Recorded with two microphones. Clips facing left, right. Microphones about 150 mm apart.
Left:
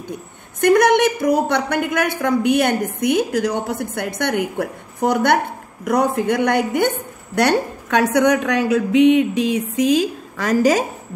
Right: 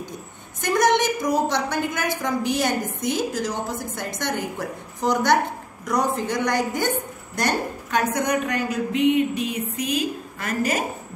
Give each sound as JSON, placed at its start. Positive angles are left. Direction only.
{"t": 0.6, "sound": "a woman's voice", "side_deg": 60}
{"t": 7.3, "sound": "a woman's voice", "side_deg": 75}